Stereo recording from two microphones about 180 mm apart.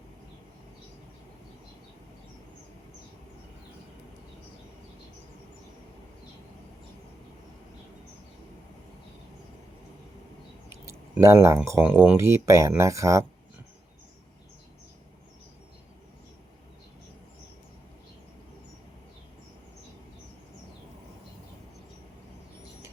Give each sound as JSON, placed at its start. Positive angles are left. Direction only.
{"t": 10.7, "sound": "speech", "side_deg": -15}